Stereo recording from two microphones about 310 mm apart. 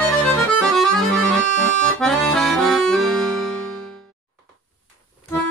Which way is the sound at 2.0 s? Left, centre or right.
Centre.